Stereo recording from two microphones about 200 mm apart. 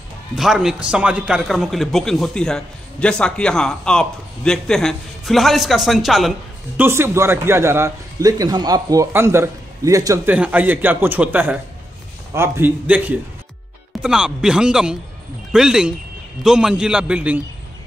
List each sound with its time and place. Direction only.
0.4 s a man's voice: centre (ahead or behind)
6.8 s a man's voice: 10° right (ahead or behind)
14.0 s a man's voice: 5° right (ahead or behind)